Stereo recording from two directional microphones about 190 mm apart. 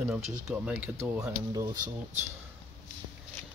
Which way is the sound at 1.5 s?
20° right (ahead or behind).